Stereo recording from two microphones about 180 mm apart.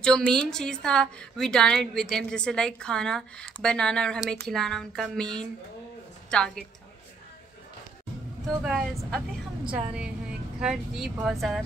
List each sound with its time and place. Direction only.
0.0 s a woman's voice: 5° left (ahead or behind)
8.6 s a woman's voice: 5° right (ahead or behind)